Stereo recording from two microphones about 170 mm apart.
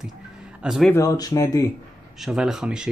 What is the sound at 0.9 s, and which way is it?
Speech, 20° left (ahead or behind).